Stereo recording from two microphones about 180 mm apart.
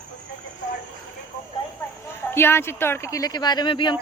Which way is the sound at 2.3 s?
15° left (ahead or behind).